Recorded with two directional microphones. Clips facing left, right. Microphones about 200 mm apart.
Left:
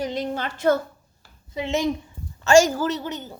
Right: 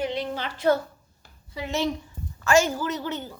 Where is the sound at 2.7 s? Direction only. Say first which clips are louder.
Left 4 dB; 35° left (ahead or behind).